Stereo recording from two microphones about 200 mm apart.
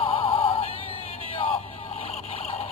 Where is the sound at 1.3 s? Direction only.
25° left (ahead or behind).